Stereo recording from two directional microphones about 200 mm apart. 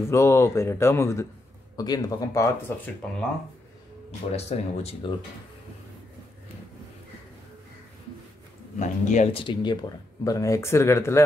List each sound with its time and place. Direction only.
0.1 s speech: 15° left (ahead or behind)
4.3 s speech: 30° left (ahead or behind)
8.7 s speech: 35° left (ahead or behind); by 11.2 s 15° left (ahead or behind)